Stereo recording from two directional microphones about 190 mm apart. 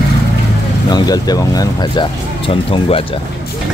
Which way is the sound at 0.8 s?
20° left (ahead or behind).